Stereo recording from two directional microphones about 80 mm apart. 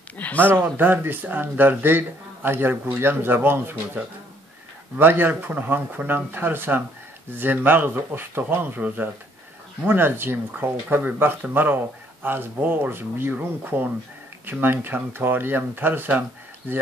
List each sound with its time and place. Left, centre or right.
0.2 s speech: centre
0.7 s speech: right